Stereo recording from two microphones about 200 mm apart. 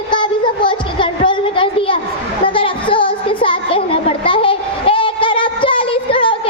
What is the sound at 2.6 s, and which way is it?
Music, 25° left (ahead or behind).